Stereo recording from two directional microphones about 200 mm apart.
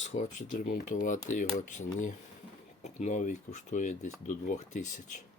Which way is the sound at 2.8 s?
35° left (ahead or behind).